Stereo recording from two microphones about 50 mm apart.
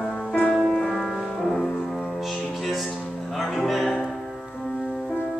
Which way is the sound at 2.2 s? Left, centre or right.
Centre.